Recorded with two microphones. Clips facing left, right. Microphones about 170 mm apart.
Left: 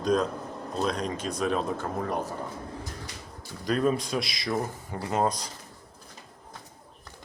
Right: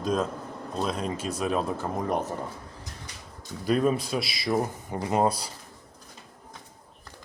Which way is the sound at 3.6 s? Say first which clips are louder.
Right 1 dB; 5° right (ahead or behind).